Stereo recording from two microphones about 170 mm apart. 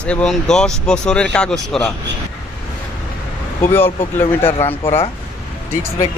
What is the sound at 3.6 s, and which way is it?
Speech, 15° left (ahead or behind).